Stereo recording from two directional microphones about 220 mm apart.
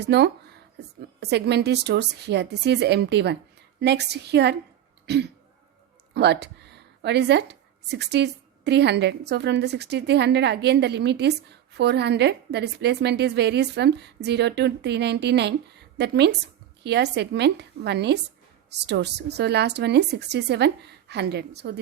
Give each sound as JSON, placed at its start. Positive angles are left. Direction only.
{"t": 0.0, "sound": "a woman's voice", "side_deg": -50}
{"t": 5.0, "sound": "throat clearing", "side_deg": -50}
{"t": 6.1, "sound": "a woman's voice", "side_deg": -50}